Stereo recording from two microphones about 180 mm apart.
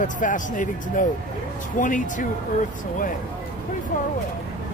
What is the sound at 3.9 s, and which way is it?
Speech, 50° left (ahead or behind).